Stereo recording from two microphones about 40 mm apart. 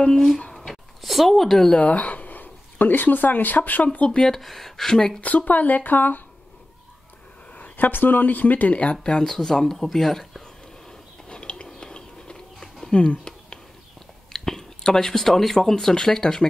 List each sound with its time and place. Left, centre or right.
0.0 s speech: centre
0.5 s a sound: centre
1.0 s speech: centre
1.8 s speech: left
4.3 s speech: centre
5.2 s speech: left
7.7 s speech: left
9.2 s speech: centre
10.4 s a sound: centre
14.3 s speech: centre
15.7 s speech: centre